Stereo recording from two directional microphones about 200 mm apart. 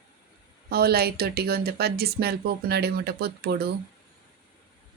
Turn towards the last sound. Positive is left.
turn(degrees=-55)  # may be behind; listen again after turning